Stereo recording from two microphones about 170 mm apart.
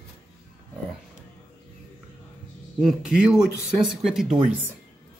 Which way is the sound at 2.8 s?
5° right (ahead or behind).